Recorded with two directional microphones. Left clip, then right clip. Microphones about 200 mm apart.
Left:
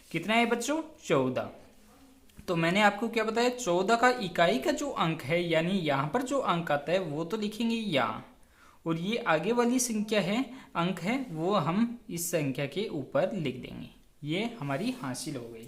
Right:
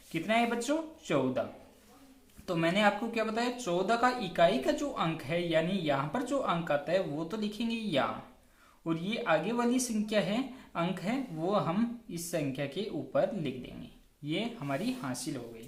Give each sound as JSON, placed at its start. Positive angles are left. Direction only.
{"t": 0.1, "sound": "speech", "side_deg": 40}
{"t": 2.5, "sound": "speech", "side_deg": 35}